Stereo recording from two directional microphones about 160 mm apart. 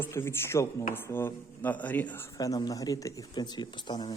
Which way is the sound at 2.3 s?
20° left (ahead or behind).